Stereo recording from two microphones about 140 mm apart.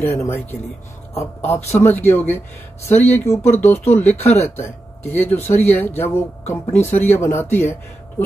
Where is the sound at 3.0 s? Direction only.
20° left (ahead or behind).